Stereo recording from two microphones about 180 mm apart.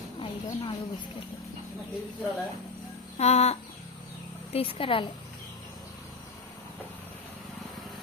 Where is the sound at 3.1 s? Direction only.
35° left (ahead or behind).